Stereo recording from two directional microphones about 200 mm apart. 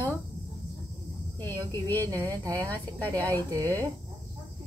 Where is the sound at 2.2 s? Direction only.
15° right (ahead or behind).